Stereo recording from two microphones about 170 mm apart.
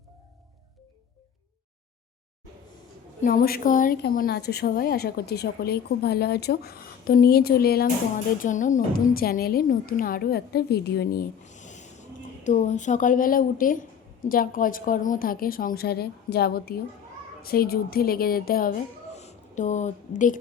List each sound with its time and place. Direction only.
3.2 s a woman's voice: 55° left (ahead or behind)
8.4 s a woman's voice: 50° left (ahead or behind)
19.1 s a sound: 40° left (ahead or behind)